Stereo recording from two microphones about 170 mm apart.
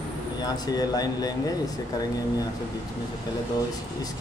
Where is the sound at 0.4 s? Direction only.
25° left (ahead or behind).